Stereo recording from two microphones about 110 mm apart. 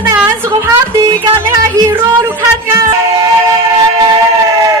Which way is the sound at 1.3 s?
20° right (ahead or behind).